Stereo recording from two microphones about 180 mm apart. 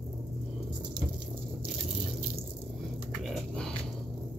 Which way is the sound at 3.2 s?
Centre (ahead or behind).